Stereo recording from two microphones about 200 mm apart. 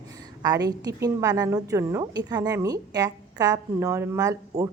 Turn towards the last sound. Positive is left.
turn(degrees=-15)  # may be behind; listen again after turning